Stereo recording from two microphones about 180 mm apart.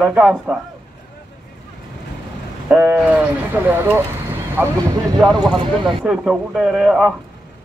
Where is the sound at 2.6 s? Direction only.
10° right (ahead or behind).